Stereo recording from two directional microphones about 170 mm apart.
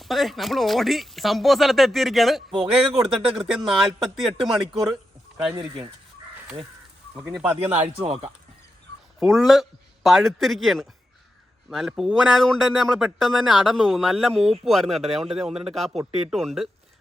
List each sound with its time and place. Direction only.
0.0 s speech: centre (ahead or behind)
7.3 s speech: 10° right (ahead or behind)
8.0 s speech: 35° right (ahead or behind)
9.1 s a man's voice: centre (ahead or behind)
14.3 s speech: 35° right (ahead or behind)
14.6 s speech: centre (ahead or behind)